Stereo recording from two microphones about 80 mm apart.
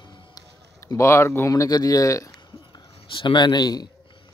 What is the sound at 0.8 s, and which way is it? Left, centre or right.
Speech, left.